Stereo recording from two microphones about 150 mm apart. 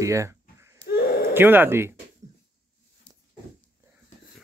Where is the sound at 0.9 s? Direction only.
85° left.